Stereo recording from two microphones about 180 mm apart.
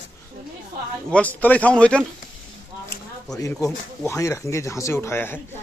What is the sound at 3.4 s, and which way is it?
Speech, 15° left (ahead or behind).